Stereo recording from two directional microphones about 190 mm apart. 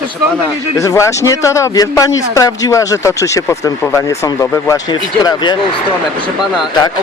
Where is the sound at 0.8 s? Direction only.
15° left (ahead or behind).